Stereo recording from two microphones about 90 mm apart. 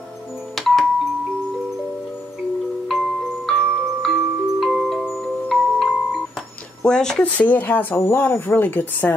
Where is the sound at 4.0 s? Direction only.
Centre (ahead or behind).